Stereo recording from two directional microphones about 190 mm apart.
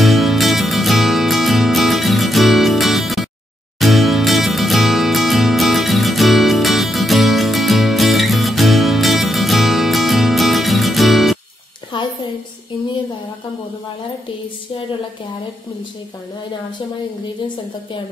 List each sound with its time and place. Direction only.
0.0 s music: centre (ahead or behind)